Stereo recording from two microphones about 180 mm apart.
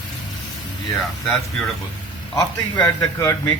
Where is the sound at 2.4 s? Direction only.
20° left (ahead or behind).